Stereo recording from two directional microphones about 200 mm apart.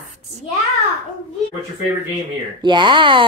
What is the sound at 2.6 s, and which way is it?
Speech, 25° right (ahead or behind).